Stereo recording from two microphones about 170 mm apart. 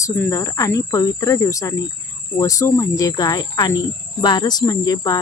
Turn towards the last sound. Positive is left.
turn(degrees=20)  # may be behind; listen again after turning